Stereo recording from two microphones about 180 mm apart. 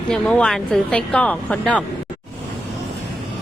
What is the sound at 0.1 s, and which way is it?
A woman's voice, 5° left (ahead or behind).